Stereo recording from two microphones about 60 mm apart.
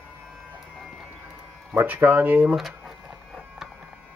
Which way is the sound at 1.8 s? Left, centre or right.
Right.